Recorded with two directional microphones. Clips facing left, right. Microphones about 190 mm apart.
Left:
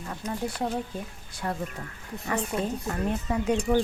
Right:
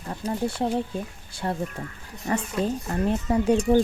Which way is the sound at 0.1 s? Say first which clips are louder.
Right 5 dB; 30° right (ahead or behind).